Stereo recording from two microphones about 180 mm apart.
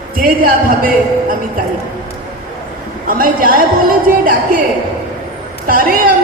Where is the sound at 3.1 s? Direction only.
50° right (ahead or behind).